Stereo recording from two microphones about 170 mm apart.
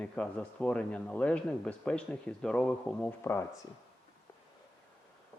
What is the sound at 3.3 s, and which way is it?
Speech, 15° left (ahead or behind).